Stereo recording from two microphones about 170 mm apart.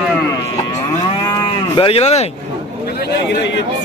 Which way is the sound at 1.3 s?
30° left (ahead or behind).